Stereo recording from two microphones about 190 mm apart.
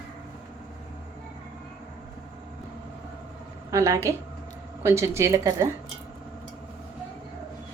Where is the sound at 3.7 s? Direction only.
15° right (ahead or behind).